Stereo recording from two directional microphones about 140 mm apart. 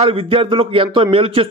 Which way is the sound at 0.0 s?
40° right (ahead or behind).